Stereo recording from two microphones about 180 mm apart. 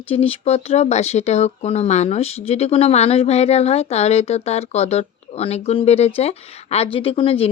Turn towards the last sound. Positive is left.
turn(degrees=30)  # may be behind; listen again after turning